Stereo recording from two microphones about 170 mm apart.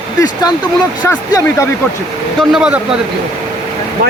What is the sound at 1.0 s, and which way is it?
Speech, 15° left (ahead or behind).